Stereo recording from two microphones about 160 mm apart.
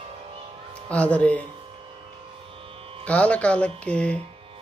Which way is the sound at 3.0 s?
10° left (ahead or behind).